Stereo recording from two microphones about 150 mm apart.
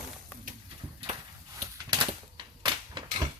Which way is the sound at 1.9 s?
30° right (ahead or behind).